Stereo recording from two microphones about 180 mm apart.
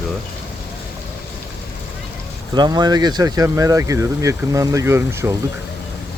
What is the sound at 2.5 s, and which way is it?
Speech, 25° right (ahead or behind).